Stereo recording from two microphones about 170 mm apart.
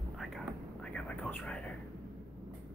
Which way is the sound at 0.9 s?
5° left (ahead or behind).